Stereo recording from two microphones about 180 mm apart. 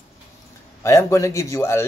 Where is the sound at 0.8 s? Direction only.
15° left (ahead or behind).